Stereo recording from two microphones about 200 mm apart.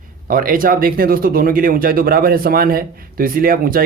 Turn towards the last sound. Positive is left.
turn(degrees=-45)  # may be behind; listen again after turning